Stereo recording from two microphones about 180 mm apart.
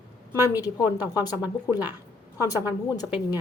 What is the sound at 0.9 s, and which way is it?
A woman's voice, 10° right (ahead or behind).